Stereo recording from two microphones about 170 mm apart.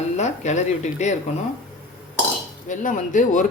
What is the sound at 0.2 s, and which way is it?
Speech, 40° left (ahead or behind).